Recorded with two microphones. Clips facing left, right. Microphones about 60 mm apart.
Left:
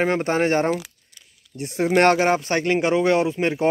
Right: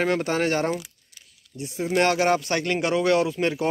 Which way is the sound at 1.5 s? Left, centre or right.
Left.